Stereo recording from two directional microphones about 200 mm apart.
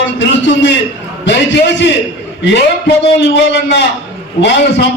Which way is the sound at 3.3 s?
60° left (ahead or behind).